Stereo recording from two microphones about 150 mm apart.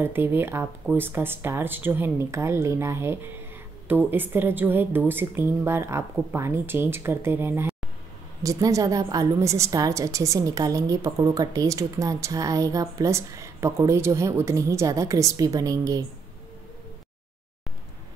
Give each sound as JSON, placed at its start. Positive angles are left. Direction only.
{"t": 0.0, "sound": "a woman's voice", "side_deg": -15}